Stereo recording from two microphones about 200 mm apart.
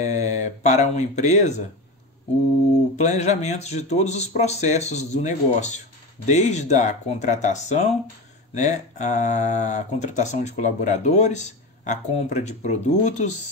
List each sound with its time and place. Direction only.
0.0 s speech: 35° left (ahead or behind)
3.0 s speech: 35° left (ahead or behind)